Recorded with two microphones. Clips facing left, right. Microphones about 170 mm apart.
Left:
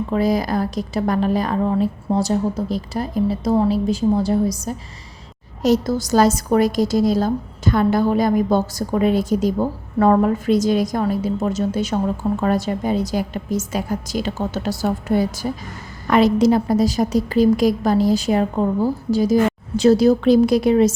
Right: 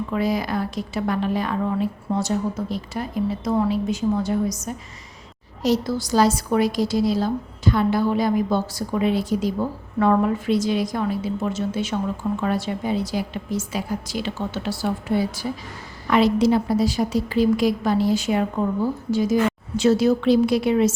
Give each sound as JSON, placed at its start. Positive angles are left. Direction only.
{"t": 0.1, "sound": "a woman's voice", "side_deg": 40}
{"t": 5.6, "sound": "a woman's voice", "side_deg": 45}